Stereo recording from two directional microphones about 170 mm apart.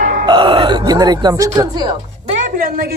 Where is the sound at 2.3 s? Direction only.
55° right (ahead or behind).